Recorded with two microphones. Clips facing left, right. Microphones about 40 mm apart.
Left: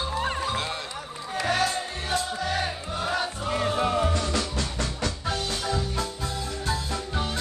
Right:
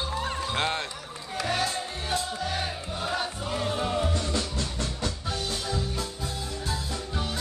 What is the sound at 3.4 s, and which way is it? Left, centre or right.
Music, left.